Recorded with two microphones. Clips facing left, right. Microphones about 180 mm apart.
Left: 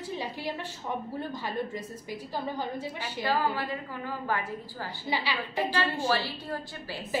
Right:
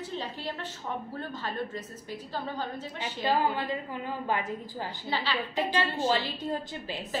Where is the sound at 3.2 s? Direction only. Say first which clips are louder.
Right 1 dB; 20° right (ahead or behind).